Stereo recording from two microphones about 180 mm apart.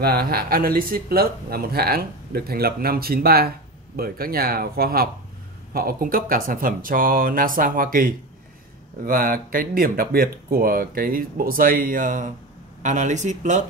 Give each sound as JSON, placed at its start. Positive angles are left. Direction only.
{"t": 0.0, "sound": "speech", "side_deg": -60}